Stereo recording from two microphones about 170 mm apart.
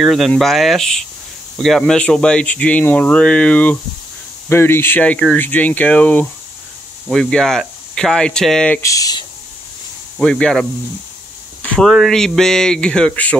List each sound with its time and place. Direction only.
0.0 s speech: centre (ahead or behind)
8.8 s speech: 20° left (ahead or behind)
10.1 s speech: 5° left (ahead or behind)